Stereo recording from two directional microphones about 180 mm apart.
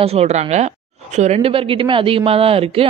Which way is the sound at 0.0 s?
35° right (ahead or behind).